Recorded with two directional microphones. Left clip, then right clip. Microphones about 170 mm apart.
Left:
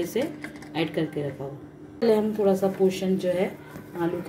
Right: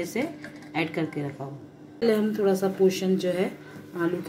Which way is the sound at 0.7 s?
25° right (ahead or behind).